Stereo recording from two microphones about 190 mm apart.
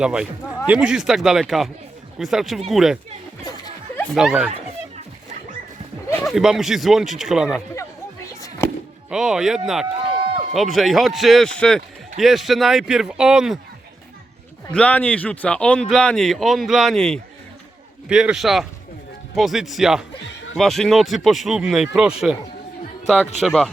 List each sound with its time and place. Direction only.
0.0 s speech: 5° right (ahead or behind)
6.2 s speech: centre (ahead or behind)
8.4 s music: 15° left (ahead or behind)
9.0 s speech: 5° right (ahead or behind)
14.7 s speech: 10° left (ahead or behind)